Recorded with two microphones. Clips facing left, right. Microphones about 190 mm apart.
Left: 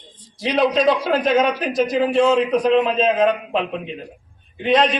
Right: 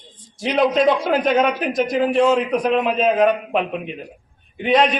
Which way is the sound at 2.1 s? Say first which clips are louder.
Left 1 dB; 10° right (ahead or behind).